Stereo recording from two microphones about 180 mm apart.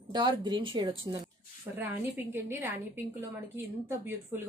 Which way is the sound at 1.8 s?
10° right (ahead or behind).